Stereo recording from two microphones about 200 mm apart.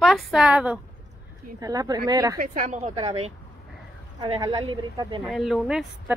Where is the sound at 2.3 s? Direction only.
45° right (ahead or behind); by 5.2 s 20° right (ahead or behind).